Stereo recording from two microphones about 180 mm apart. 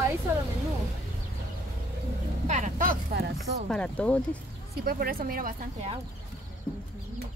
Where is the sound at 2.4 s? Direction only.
45° right (ahead or behind).